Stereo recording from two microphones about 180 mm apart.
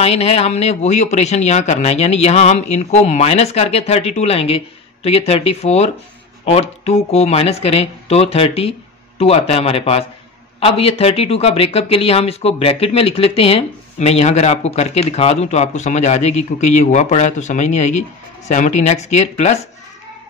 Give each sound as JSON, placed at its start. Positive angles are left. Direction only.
{"t": 0.0, "sound": "speech", "side_deg": 35}